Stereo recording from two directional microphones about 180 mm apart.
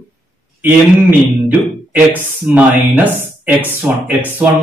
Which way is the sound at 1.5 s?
10° right (ahead or behind).